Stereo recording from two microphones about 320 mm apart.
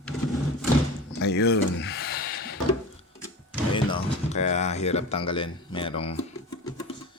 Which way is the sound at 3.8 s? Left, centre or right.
Centre.